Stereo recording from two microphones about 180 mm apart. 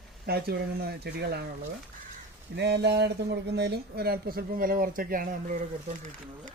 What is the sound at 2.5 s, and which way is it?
Speech, 70° right (ahead or behind).